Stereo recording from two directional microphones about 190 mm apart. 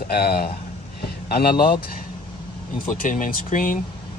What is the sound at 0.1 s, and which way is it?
Speech, 55° left (ahead or behind).